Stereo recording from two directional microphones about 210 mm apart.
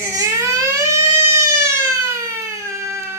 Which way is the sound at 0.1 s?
15° right (ahead or behind).